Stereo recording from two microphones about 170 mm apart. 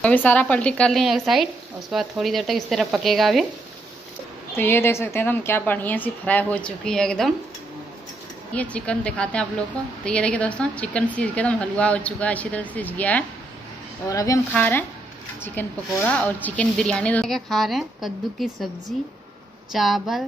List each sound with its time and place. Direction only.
0.0 s speech: 10° left (ahead or behind)
4.6 s a woman's voice: 15° left (ahead or behind)
8.5 s a woman's voice: 5° left (ahead or behind)
14.0 s a woman's voice: 20° left (ahead or behind); by 20.2 s centre (ahead or behind)